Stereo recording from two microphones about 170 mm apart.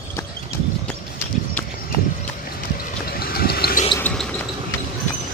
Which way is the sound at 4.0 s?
5° left (ahead or behind).